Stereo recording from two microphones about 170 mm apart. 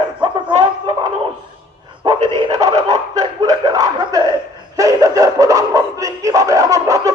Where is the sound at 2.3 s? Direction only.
25° right (ahead or behind).